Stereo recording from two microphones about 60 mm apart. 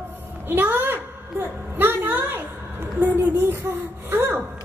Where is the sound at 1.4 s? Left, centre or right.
Right.